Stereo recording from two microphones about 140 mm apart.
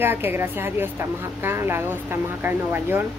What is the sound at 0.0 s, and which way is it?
A woman's voice, 15° right (ahead or behind).